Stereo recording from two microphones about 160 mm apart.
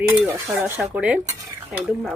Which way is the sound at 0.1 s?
10° right (ahead or behind).